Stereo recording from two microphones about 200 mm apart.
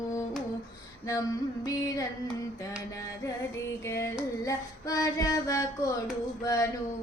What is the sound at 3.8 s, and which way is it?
Carnatic music, 15° left (ahead or behind).